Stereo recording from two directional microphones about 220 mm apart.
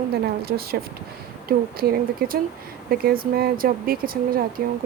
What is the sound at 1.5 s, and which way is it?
Speech, 45° right (ahead or behind).